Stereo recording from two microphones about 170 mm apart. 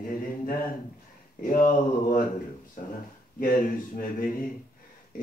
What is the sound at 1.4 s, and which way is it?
Speech, 55° left (ahead or behind).